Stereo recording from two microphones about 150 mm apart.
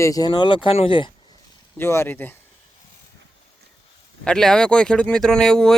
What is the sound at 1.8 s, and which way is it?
Speech, 15° left (ahead or behind).